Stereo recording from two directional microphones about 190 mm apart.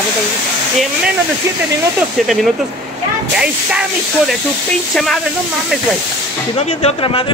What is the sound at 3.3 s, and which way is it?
Speech, 5° right (ahead or behind).